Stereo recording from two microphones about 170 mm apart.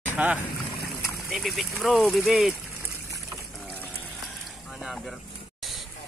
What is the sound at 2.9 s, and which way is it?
Boat, 20° right (ahead or behind).